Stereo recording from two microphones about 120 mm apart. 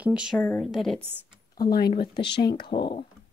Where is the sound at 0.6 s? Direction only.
Centre (ahead or behind).